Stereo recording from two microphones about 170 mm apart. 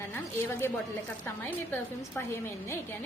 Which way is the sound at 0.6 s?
15° left (ahead or behind).